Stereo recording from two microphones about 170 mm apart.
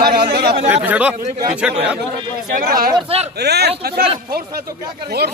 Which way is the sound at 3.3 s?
75° right (ahead or behind).